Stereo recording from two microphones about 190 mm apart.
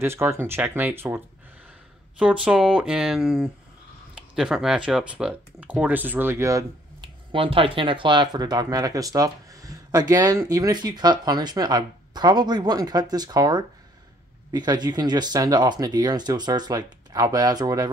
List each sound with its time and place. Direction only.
0.0 s speech: 15° right (ahead or behind)
7.3 s speech: 30° right (ahead or behind)